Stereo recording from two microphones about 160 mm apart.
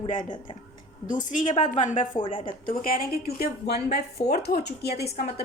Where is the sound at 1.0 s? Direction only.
55° left (ahead or behind).